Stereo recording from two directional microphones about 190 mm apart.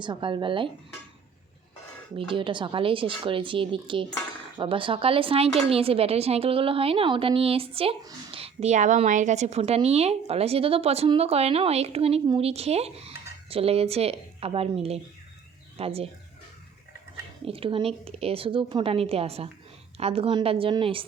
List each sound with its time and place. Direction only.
0.0 s speech: 25° right (ahead or behind)
2.1 s speech: 25° right (ahead or behind)
17.4 s speech: 30° right (ahead or behind)